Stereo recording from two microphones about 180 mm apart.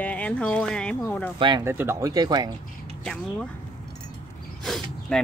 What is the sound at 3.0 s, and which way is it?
Speech, centre (ahead or behind).